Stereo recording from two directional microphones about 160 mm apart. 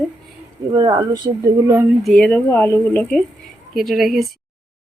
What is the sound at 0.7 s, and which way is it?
Speech, 25° right (ahead or behind).